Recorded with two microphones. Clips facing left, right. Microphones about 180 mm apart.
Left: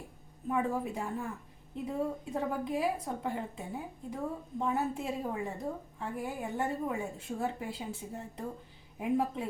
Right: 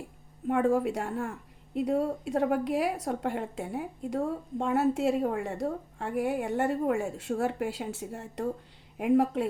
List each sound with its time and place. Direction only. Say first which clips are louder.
0.4 s a woman's voice: right 7 dB; 75° right (ahead or behind)